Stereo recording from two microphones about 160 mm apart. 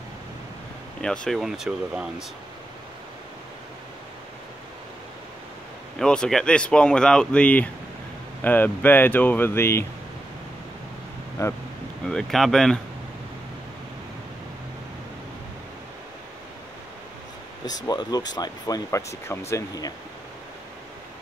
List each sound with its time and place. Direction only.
1.0 s speech: 5° left (ahead or behind)
5.9 s speech: 5° left (ahead or behind)
11.4 s speech: 20° left (ahead or behind)
12.1 s speech: 5° left (ahead or behind)
17.6 s speech: 25° left (ahead or behind)